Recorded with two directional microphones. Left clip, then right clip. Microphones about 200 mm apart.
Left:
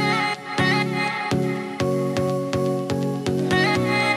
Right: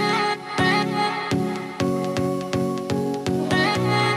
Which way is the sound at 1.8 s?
Centre (ahead or behind).